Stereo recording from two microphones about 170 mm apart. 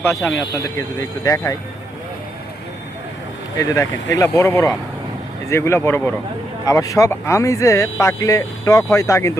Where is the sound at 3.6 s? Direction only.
20° left (ahead or behind).